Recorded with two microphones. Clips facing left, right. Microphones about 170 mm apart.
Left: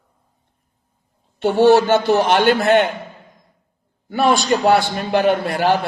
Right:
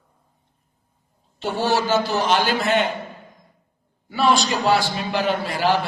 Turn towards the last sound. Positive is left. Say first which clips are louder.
# left 5 dB
turn(degrees=55)  # may be behind; listen again after turning